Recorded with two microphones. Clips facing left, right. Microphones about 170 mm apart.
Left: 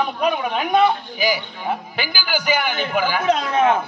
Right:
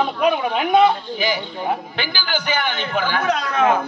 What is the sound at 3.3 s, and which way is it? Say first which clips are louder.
Speech: left 2 dB; 25° left (ahead or behind).